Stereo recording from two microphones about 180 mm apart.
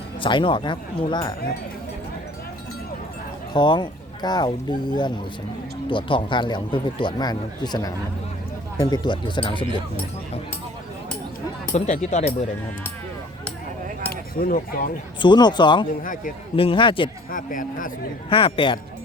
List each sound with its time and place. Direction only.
0.2 s speech: 25° left (ahead or behind)
3.5 s speech: 25° left (ahead or behind)
11.7 s speech: 40° left (ahead or behind)
14.1 s speech: 55° left (ahead or behind)
15.2 s speech: 25° left (ahead or behind)
17.3 s speech: 45° left (ahead or behind)
18.3 s speech: 30° left (ahead or behind)